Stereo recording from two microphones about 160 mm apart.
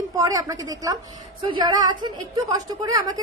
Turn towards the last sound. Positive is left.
turn(degrees=-25)  # may be behind; listen again after turning